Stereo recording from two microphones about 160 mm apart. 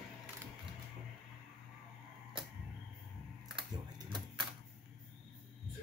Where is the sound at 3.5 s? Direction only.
30° right (ahead or behind).